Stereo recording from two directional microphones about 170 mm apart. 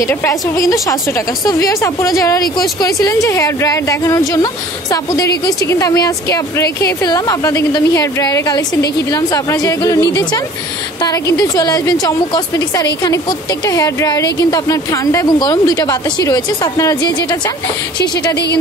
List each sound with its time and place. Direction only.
0.0 s a woman's voice: 15° left (ahead or behind)
13.7 s a woman's voice: 20° left (ahead or behind)